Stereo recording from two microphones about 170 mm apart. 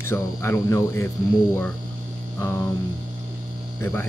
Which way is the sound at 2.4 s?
15° left (ahead or behind).